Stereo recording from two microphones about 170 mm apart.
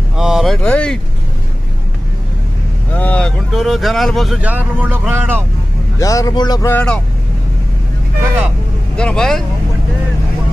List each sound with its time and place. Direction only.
0.2 s a sound: centre (ahead or behind)
2.9 s speech: 10° left (ahead or behind); by 5.4 s 10° right (ahead or behind)
5.9 s a man's voice: 20° left (ahead or behind)
6.7 s speech: 10° left (ahead or behind)
8.9 s speech: 5° left (ahead or behind)